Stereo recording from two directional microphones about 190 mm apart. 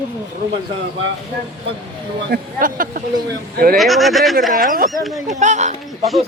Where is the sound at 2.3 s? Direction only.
50° right (ahead or behind).